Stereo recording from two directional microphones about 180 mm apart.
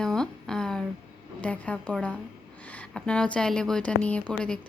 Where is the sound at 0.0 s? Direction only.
5° left (ahead or behind).